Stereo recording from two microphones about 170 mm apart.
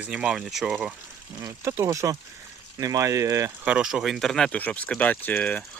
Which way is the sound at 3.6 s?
5° right (ahead or behind).